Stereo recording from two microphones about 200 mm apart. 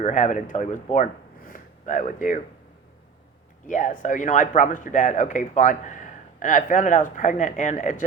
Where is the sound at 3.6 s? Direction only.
40° left (ahead or behind).